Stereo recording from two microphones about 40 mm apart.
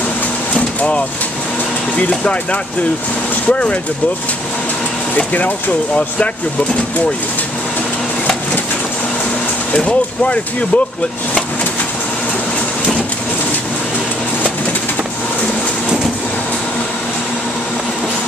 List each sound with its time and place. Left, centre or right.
0.6 s vehicle: left
2.0 s speech: left
5.1 s speech: left
9.8 s speech: left